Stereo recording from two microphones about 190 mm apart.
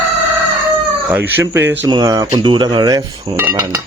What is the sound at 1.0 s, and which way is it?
A man's voice, 10° right (ahead or behind).